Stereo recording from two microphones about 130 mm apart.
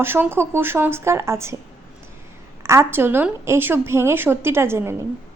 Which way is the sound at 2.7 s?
20° right (ahead or behind).